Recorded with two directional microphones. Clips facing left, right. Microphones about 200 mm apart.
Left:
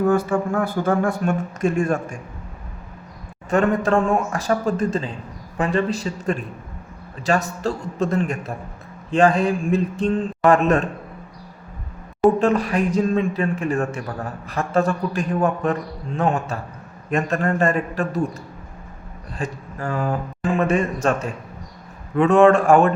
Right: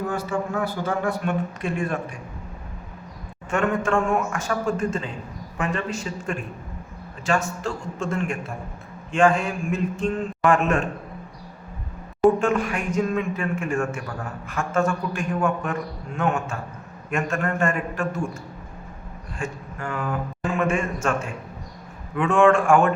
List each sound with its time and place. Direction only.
0.1 s speech: 55° left (ahead or behind)
3.5 s a man's voice: 35° left (ahead or behind)
12.4 s a man's voice: 35° left (ahead or behind)
19.4 s a man's voice: 35° left (ahead or behind)